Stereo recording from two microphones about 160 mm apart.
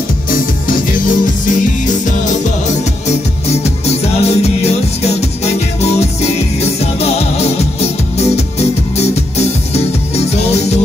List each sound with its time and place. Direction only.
0.3 s music: 60° left (ahead or behind)
3.1 s music: 40° left (ahead or behind)